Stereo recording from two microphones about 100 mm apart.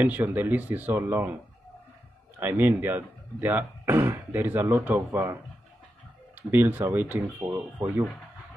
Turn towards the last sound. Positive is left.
turn(degrees=-25)  # may be behind; listen again after turning